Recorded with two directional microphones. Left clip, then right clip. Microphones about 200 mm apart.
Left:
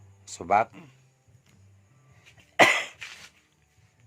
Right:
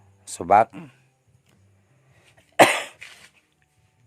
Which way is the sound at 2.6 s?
55° right (ahead or behind).